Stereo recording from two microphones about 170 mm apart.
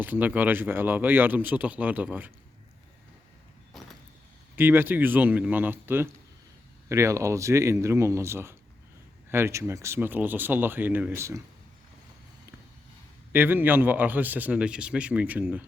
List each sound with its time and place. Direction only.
0.0 s speech: 10° right (ahead or behind)
4.5 s speech: 10° right (ahead or behind)
13.3 s speech: 10° right (ahead or behind)